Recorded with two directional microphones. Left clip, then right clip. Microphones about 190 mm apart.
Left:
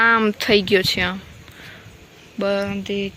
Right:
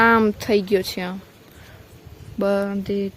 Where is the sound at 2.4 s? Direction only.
25° right (ahead or behind).